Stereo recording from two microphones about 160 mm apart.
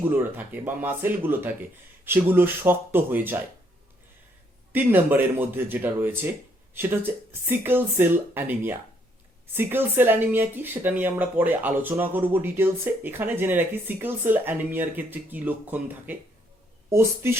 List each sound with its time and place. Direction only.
0.0 s speech: 10° right (ahead or behind)
4.7 s speech: 10° right (ahead or behind)